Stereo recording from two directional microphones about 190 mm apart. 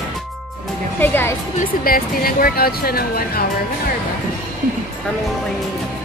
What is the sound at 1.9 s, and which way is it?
Speech, 50° left (ahead or behind).